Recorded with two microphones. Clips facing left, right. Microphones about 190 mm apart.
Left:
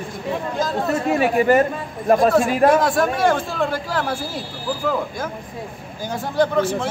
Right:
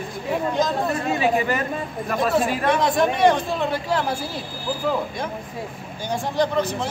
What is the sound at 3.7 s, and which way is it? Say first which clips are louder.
Speech: even; centre (ahead or behind).